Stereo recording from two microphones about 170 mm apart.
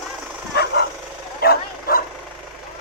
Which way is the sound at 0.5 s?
70° left (ahead or behind).